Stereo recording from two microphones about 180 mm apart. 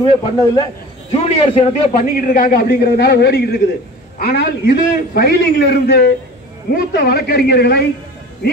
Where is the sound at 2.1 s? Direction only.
55° left (ahead or behind).